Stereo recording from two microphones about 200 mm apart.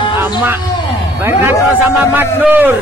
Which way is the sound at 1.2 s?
10° right (ahead or behind).